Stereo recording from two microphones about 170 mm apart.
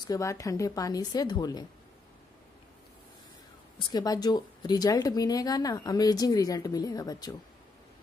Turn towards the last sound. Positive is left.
turn(degrees=20)  # may be behind; listen again after turning